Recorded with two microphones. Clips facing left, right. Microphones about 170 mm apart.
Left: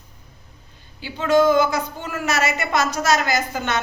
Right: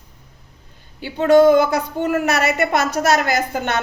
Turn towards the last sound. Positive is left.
turn(degrees=-60)  # may be behind; listen again after turning